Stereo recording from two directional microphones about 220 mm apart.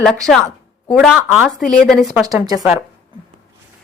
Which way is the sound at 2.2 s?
15° right (ahead or behind).